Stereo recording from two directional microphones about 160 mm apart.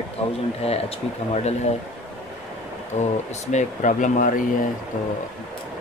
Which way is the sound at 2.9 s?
45° left (ahead or behind).